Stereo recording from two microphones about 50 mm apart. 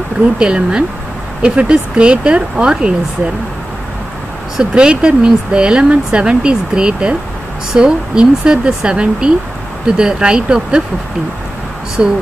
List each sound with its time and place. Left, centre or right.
0.4 s speech: centre
4.6 s speech: centre
12.0 s speech: right